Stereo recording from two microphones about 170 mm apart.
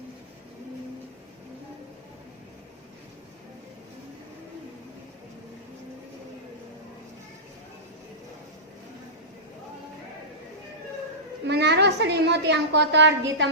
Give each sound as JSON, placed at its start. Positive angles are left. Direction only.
{"t": 11.4, "sound": "a woman's voice", "side_deg": -80}